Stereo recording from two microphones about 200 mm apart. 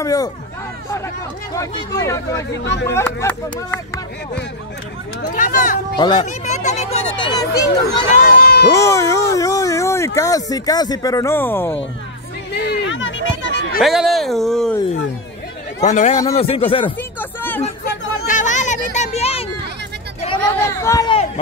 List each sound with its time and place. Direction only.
0.0 s speech: 15° left (ahead or behind)
5.3 s speech: 40° left (ahead or behind)
5.9 s speech: 20° left (ahead or behind)
6.2 s speech: 35° left (ahead or behind); by 7.6 s 20° left (ahead or behind)
7.8 s speech: 45° left (ahead or behind)
8.7 s speech: 15° left (ahead or behind)
12.5 s a sound: 55° left (ahead or behind)
13.7 s speech: centre (ahead or behind)
15.8 s speech: 35° left (ahead or behind)
17.2 s music: 10° left (ahead or behind)
17.8 s chatter: 40° left (ahead or behind)
18.9 s a sound: 30° left (ahead or behind)
20.6 s a sound: 15° left (ahead or behind)